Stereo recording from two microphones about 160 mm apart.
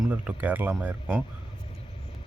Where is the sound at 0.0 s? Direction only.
10° right (ahead or behind).